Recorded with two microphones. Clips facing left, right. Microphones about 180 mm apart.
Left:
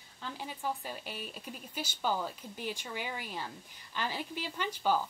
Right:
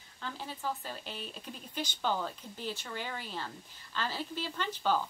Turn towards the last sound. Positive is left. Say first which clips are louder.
# even
turn(degrees=10)  # may be behind; listen again after turning